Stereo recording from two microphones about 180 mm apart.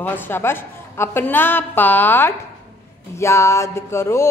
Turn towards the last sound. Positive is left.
turn(degrees=15)  # may be behind; listen again after turning